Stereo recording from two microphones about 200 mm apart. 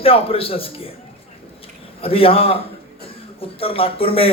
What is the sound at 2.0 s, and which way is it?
A man's voice, 30° left (ahead or behind).